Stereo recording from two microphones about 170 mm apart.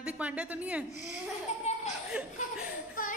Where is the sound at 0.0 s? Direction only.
5° right (ahead or behind).